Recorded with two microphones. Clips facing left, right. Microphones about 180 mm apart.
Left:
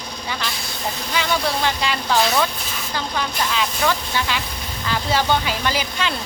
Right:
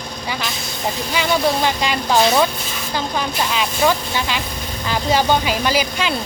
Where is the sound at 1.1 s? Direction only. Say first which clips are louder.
Right 4 dB; 15° right (ahead or behind).